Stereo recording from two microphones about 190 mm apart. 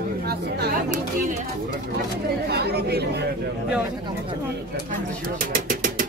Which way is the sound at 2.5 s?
60° right (ahead or behind).